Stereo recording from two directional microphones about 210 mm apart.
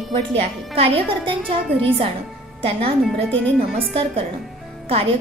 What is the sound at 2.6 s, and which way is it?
Speech, 25° right (ahead or behind).